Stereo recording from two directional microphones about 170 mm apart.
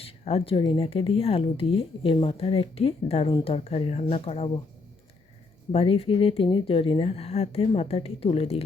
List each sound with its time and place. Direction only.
0.0 s speech: 35° left (ahead or behind)
5.7 s speech: 35° left (ahead or behind)